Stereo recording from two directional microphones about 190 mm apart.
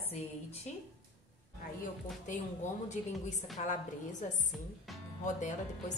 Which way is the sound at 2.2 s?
40° left (ahead or behind).